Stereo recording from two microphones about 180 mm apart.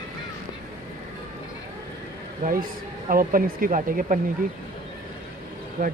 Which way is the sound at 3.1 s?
50° right (ahead or behind).